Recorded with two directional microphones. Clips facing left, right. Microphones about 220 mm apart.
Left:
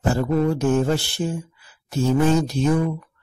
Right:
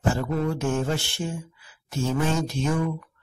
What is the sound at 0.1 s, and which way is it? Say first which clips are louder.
Speech: left 7 dB; 35° left (ahead or behind).